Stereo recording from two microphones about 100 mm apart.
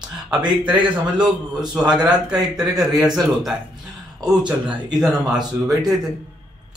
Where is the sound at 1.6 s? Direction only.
45° right (ahead or behind).